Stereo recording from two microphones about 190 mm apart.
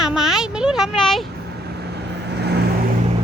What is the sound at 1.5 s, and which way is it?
Vehicle, 60° right (ahead or behind).